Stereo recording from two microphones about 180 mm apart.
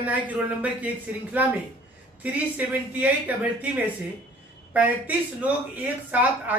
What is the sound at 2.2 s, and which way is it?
Speech, 10° right (ahead or behind).